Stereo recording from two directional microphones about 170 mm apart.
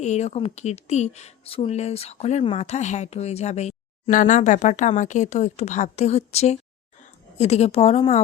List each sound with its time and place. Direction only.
0.0 s a woman's voice: 40° left (ahead or behind)